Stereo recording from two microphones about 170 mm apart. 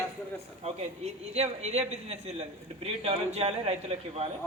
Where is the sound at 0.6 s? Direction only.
40° right (ahead or behind).